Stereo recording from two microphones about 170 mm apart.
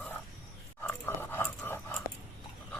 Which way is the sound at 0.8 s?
10° left (ahead or behind).